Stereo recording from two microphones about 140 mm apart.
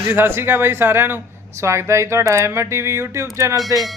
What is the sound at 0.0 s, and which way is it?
Speech, 15° right (ahead or behind).